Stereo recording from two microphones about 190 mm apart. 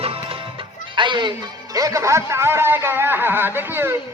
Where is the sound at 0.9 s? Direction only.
25° right (ahead or behind).